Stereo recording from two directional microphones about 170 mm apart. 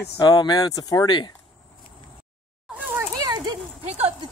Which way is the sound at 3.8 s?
40° right (ahead or behind).